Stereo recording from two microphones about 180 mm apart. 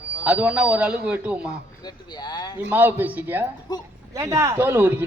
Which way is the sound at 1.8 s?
20° left (ahead or behind).